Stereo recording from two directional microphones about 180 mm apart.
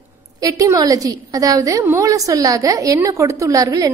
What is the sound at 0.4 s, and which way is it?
A woman's voice, 20° right (ahead or behind).